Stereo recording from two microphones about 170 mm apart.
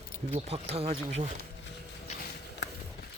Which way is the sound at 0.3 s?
35° right (ahead or behind).